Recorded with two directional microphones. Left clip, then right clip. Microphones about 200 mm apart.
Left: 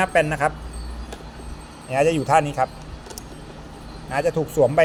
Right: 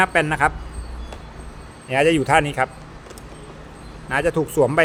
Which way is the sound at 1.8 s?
25° right (ahead or behind).